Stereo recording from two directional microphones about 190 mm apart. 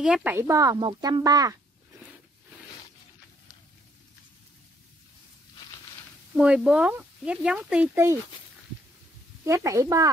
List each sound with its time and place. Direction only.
0.0 s a woman's voice: 5° right (ahead or behind)
6.3 s speech: 5° right (ahead or behind)
9.4 s a woman's voice: 15° right (ahead or behind)